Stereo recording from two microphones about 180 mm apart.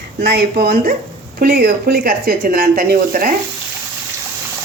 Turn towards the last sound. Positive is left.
turn(degrees=-55)  # may be behind; listen again after turning